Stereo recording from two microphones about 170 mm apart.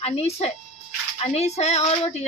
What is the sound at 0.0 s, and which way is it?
Speech, 35° left (ahead or behind).